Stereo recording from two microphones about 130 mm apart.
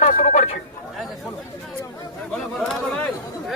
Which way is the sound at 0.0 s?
75° left (ahead or behind).